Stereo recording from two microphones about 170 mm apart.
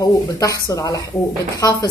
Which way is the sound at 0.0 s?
20° left (ahead or behind).